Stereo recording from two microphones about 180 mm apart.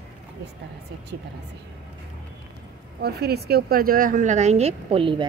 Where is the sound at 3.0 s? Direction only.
65° right (ahead or behind); by 5.3 s 30° right (ahead or behind).